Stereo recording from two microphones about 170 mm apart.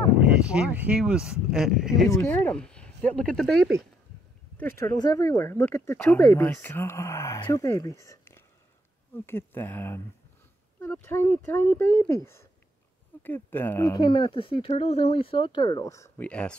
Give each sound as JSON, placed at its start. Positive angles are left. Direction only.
{"t": 0.2, "sound": "speech", "side_deg": -5}
{"t": 2.0, "sound": "speech", "side_deg": 15}
{"t": 4.6, "sound": "speech", "side_deg": 15}
{"t": 13.2, "sound": "speech", "side_deg": 10}
{"t": 16.3, "sound": "speech", "side_deg": 5}